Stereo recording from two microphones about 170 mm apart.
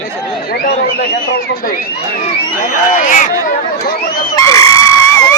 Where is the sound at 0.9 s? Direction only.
70° left (ahead or behind).